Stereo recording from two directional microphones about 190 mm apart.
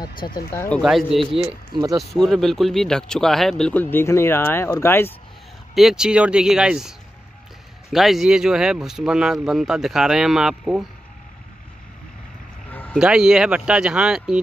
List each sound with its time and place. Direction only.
0.5 s speech: 10° left (ahead or behind)
1.7 s speech: 20° right (ahead or behind)
2.0 s speech: centre (ahead or behind)
5.8 s speech: 5° right (ahead or behind)
12.7 s vehicle: 10° left (ahead or behind)
13.0 s speech: 5° right (ahead or behind)